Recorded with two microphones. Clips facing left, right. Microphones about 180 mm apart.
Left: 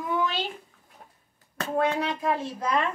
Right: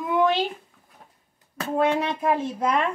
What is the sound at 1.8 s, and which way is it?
Speech, 20° right (ahead or behind).